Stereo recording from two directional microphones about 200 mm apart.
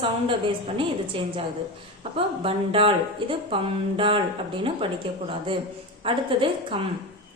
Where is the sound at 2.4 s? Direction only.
30° right (ahead or behind).